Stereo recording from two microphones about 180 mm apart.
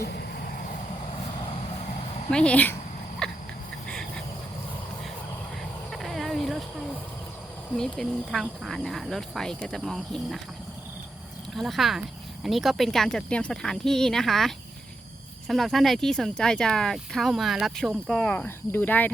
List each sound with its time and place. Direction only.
0.0 s vehicle: 60° left (ahead or behind)
2.3 s speech: 5° left (ahead or behind)
3.2 s a sound: 5° left (ahead or behind)
3.8 s duck: 5° left (ahead or behind)
5.9 s a sound: centre (ahead or behind)
7.8 s speech: centre (ahead or behind)
11.5 s speech: centre (ahead or behind)